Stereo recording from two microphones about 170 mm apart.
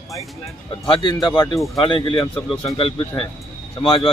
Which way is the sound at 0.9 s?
30° left (ahead or behind).